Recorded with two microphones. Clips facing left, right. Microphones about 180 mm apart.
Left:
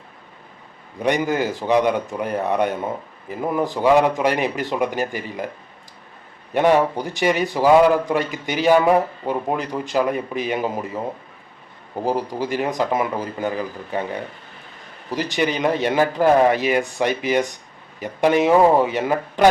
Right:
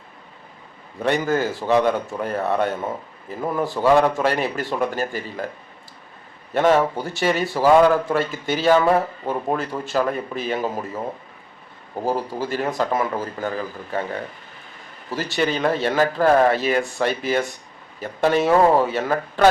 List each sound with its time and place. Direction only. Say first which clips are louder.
1.0 s a man's voice: left 1 dB; 15° left (ahead or behind)
6.5 s a man's voice: left 1 dB; 15° left (ahead or behind)
12.0 s a man's voice: left 1 dB; 15° left (ahead or behind)